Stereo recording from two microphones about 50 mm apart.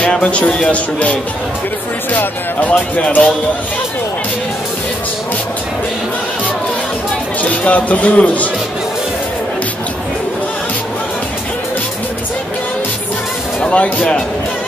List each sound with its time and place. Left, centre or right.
0.2 s speech: left
2.1 s speech: left
7.4 s speech: left
13.6 s speech: left